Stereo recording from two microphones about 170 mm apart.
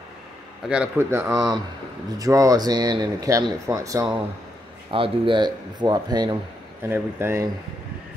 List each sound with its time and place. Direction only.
0.7 s speech: 10° right (ahead or behind)
2.1 s speech: 20° right (ahead or behind)
4.9 s speech: 30° right (ahead or behind)
6.8 s speech: 15° right (ahead or behind)